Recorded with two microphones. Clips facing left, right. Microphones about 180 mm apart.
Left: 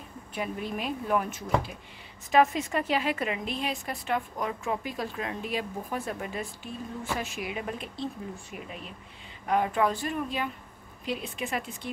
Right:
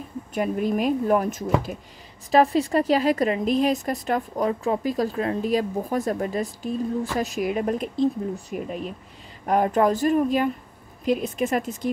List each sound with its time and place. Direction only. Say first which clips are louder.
0.3 s a woman's voice: right 9 dB; 45° right (ahead or behind)